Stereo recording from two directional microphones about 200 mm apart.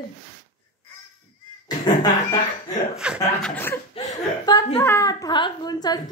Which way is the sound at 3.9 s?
20° left (ahead or behind).